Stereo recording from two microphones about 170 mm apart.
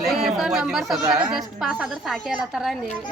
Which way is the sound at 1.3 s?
Centre (ahead or behind).